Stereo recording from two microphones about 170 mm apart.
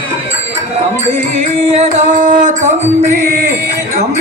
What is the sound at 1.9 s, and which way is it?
Music, 45° right (ahead or behind).